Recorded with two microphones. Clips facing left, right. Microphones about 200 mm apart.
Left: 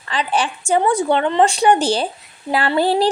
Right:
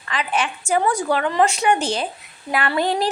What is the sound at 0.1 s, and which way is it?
A woman's voice, 30° left (ahead or behind).